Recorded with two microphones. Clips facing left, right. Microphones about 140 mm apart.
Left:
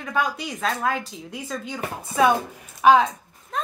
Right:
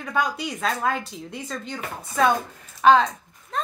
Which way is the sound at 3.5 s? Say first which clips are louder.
Even; centre (ahead or behind).